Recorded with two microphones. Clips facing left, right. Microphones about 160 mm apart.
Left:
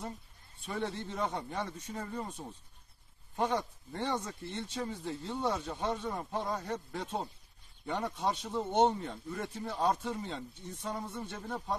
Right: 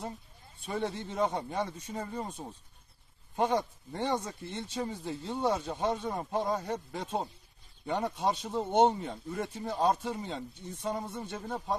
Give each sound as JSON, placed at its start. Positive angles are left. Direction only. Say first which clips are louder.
{"t": 0.7, "sound": "speech", "louder": "right 2 dB", "side_deg": -15}
{"t": 5.3, "sound": "speech", "louder": "right 4 dB", "side_deg": -25}
{"t": 8.2, "sound": "speech", "louder": "right 3 dB", "side_deg": -30}
{"t": 8.7, "sound": "speech", "louder": "right 3 dB", "side_deg": -15}